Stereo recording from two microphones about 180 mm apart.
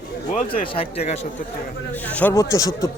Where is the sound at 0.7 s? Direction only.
35° left (ahead or behind).